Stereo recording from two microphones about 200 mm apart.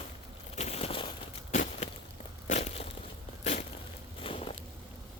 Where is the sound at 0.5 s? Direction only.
30° left (ahead or behind).